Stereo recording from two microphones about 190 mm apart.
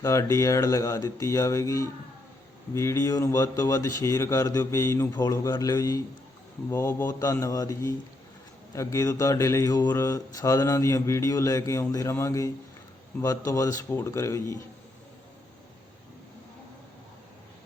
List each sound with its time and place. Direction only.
0.0 s speech: 15° left (ahead or behind)